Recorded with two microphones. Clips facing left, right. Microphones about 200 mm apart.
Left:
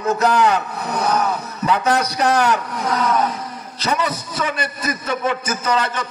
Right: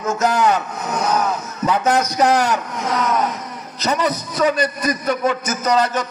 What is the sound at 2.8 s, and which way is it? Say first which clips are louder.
Speech: even; 30° left (ahead or behind).